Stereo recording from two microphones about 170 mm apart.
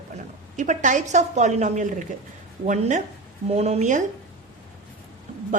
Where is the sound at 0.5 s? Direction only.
45° right (ahead or behind).